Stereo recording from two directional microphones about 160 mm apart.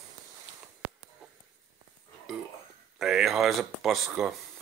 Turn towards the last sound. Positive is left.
turn(degrees=-5)  # may be behind; listen again after turning